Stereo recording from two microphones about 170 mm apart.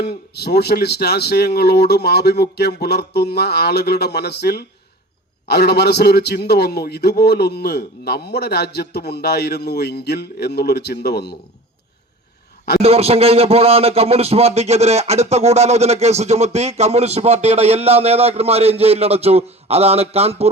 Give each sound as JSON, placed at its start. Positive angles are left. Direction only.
{"t": 0.0, "sound": "a man's voice", "side_deg": 70}
{"t": 12.8, "sound": "a man's voice", "side_deg": -35}